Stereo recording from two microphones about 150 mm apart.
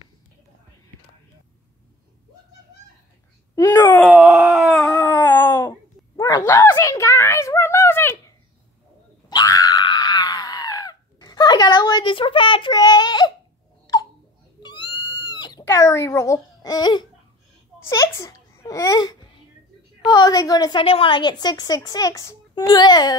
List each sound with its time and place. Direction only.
3.5 s speech: 15° left (ahead or behind)
4.0 s howl: 10° right (ahead or behind)
4.8 s a sound: 15° left (ahead or behind)
9.3 s screaming: 25° left (ahead or behind)
14.6 s cat: 30° left (ahead or behind)
17.8 s a sound: 20° left (ahead or behind)
20.0 s a woman's voice: 25° left (ahead or behind)
20.8 s a woman's voice: 40° left (ahead or behind)